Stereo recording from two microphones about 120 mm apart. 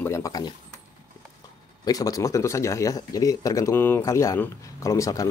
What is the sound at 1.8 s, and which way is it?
Speech, 30° left (ahead or behind).